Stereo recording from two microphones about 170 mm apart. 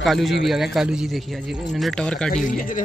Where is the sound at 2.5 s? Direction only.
50° left (ahead or behind).